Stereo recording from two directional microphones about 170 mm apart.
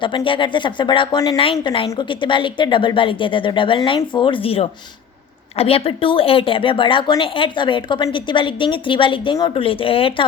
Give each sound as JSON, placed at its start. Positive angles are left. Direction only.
{"t": 0.0, "sound": "a woman's voice", "side_deg": 30}